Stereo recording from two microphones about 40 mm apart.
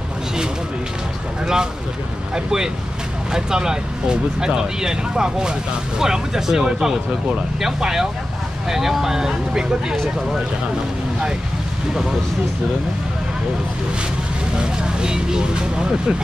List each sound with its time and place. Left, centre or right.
1.4 s speech: centre
14.6 s speech: right